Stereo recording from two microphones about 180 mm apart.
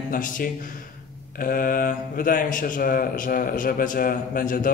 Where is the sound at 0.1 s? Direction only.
50° left (ahead or behind).